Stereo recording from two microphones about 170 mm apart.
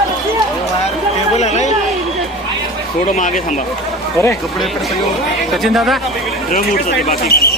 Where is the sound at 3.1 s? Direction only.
50° left (ahead or behind).